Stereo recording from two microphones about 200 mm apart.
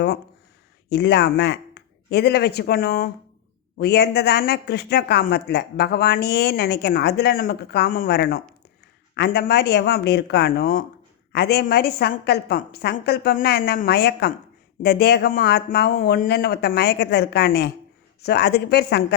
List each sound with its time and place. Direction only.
0.9 s speech: 60° left (ahead or behind)